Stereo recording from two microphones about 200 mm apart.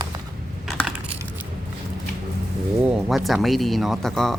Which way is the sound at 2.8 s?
5° right (ahead or behind).